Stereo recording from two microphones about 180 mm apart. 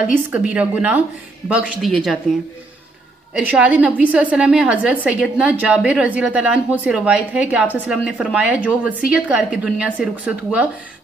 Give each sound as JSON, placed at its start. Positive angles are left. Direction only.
{"t": 0.0, "sound": "a woman's voice", "side_deg": -5}
{"t": 3.3, "sound": "a woman's voice", "side_deg": -5}